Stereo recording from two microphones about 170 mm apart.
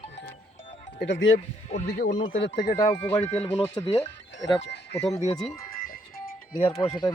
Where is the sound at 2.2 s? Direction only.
35° left (ahead or behind).